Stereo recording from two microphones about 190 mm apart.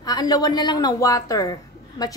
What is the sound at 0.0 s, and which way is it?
A woman's voice, 20° left (ahead or behind).